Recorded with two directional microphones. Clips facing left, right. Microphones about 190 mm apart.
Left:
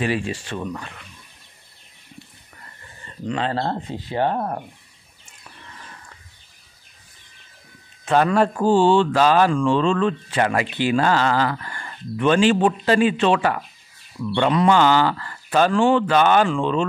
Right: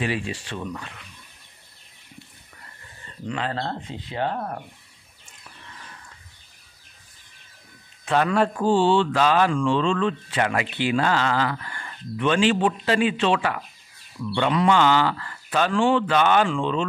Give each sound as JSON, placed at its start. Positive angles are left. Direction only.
{"t": 0.0, "sound": "speech", "side_deg": 45}
{"t": 3.3, "sound": "speech", "side_deg": 35}
{"t": 8.0, "sound": "speech", "side_deg": 40}